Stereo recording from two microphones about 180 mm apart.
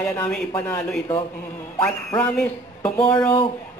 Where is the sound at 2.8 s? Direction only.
30° left (ahead or behind).